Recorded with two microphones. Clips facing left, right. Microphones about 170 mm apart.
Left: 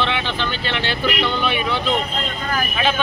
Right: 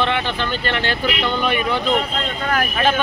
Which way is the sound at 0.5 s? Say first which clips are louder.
Right 2 dB; 45° right (ahead or behind).